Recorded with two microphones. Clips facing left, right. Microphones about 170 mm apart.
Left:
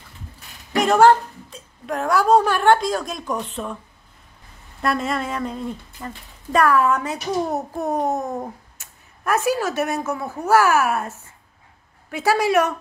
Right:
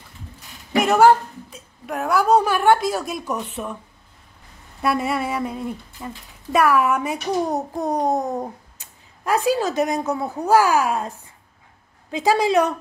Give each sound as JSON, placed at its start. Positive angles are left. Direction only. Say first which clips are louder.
{"t": 0.7, "sound": "a woman's voice", "louder": "even", "side_deg": -5}
{"t": 4.8, "sound": "speech", "louder": "right 1 dB", "side_deg": -10}